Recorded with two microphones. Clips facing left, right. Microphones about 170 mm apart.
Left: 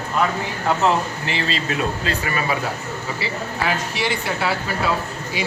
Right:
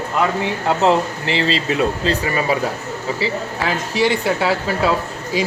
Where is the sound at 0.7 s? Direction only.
25° right (ahead or behind).